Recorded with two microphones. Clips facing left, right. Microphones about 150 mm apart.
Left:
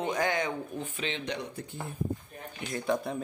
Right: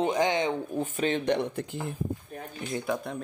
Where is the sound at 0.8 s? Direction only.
45° right (ahead or behind); by 1.8 s 70° right (ahead or behind).